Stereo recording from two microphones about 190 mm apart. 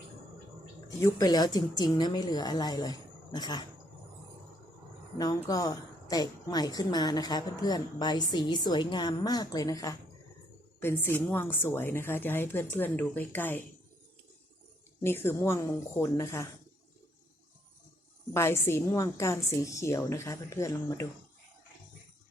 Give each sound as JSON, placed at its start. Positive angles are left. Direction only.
{"t": 0.9, "sound": "a woman's voice", "side_deg": 15}
{"t": 5.1, "sound": "a woman's voice", "side_deg": 20}
{"t": 15.0, "sound": "speech", "side_deg": 10}
{"t": 18.3, "sound": "speech", "side_deg": 15}